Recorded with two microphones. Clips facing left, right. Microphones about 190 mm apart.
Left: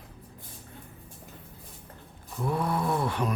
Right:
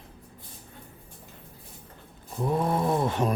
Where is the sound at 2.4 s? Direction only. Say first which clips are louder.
Right 3 dB; 25° right (ahead or behind).